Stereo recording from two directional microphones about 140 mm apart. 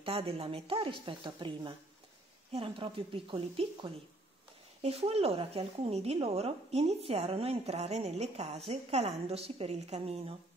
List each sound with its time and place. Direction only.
0.0 s a woman's voice: 45° right (ahead or behind)